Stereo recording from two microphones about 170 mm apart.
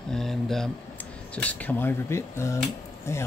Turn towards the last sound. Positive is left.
turn(degrees=15)  # may be behind; listen again after turning